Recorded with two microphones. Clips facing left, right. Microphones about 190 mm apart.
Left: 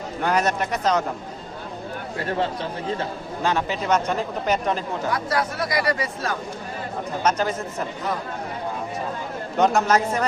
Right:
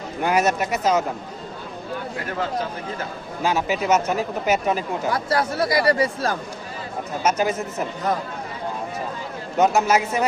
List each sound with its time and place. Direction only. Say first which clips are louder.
0.2 s speech: right 2 dB; 10° right (ahead or behind)
2.1 s speech: left 2 dB; 30° left (ahead or behind)
3.4 s speech: right 2 dB; 5° right (ahead or behind)
5.1 s speech: right 3 dB; 30° right (ahead or behind)
7.2 s speech: right 2 dB; 5° right (ahead or behind)
9.6 s speech: right 1 dB; 5° right (ahead or behind)